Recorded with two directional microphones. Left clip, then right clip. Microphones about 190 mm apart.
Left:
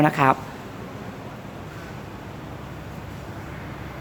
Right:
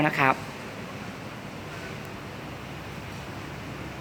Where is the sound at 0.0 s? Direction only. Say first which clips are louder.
Left 4 dB; 15° left (ahead or behind).